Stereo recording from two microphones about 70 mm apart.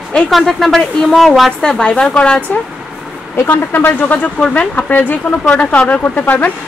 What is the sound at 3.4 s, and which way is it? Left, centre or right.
A woman's voice, left.